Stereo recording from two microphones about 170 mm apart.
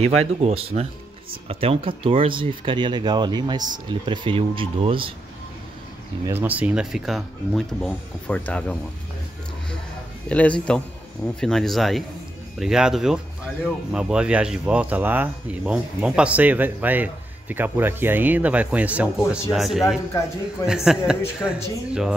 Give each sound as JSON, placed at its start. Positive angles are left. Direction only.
{"t": 0.0, "sound": "speech", "side_deg": -40}
{"t": 6.2, "sound": "speech", "side_deg": -10}
{"t": 10.2, "sound": "a man's voice", "side_deg": 10}
{"t": 21.4, "sound": "a man's voice", "side_deg": 15}